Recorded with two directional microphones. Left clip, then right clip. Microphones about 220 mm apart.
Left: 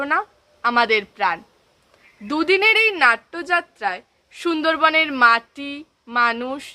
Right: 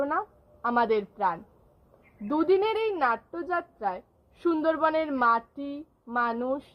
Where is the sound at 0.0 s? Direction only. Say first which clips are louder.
Left 7 dB; 35° left (ahead or behind).